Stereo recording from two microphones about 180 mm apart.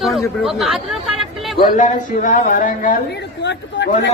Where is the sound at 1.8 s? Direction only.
50° left (ahead or behind).